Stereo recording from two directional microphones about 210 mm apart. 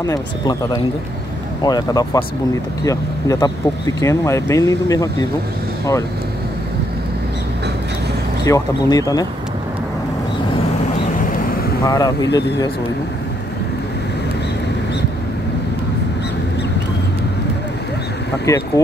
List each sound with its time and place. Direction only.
0.0 s speech: 20° left (ahead or behind)
8.5 s speech: 15° left (ahead or behind)
11.8 s speech: 20° left (ahead or behind)
18.5 s speech: 15° left (ahead or behind)